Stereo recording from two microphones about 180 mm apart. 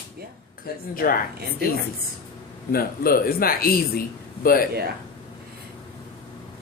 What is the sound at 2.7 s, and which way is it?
Speech, 55° left (ahead or behind).